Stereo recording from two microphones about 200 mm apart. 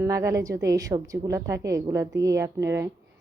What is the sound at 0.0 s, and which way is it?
A woman's voice, 15° right (ahead or behind).